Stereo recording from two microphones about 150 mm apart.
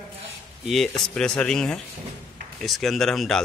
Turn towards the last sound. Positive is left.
turn(degrees=0)  # may be behind; listen again after turning